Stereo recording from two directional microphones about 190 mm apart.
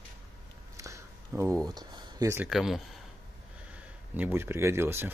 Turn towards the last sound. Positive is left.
turn(degrees=-10)  # may be behind; listen again after turning